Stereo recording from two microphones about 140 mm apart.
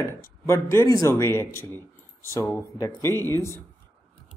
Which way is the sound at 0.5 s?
20° left (ahead or behind).